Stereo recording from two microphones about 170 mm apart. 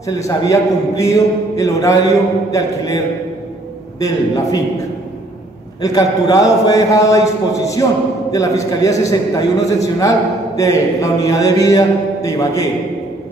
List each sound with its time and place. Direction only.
0.0 s a man's voice: 20° left (ahead or behind)
5.8 s a man's voice: 20° left (ahead or behind)